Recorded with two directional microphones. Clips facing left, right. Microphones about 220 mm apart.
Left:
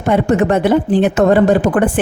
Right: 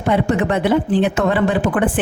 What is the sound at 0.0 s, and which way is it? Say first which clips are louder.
A woman's voice: left 4 dB; 45° left (ahead or behind).